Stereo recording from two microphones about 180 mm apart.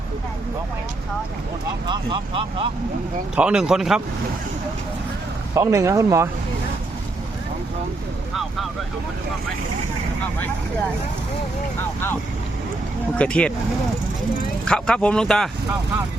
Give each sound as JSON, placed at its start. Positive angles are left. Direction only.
{"t": 1.9, "sound": "speech", "side_deg": -30}
{"t": 3.3, "sound": "speech", "side_deg": -5}
{"t": 5.5, "sound": "speech", "side_deg": -15}
{"t": 13.1, "sound": "speech", "side_deg": 5}
{"t": 14.6, "sound": "speech", "side_deg": 5}